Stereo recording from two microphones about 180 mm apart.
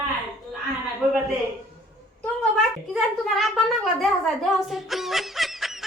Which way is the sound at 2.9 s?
Centre (ahead or behind).